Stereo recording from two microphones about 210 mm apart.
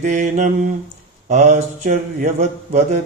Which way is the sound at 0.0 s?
35° right (ahead or behind).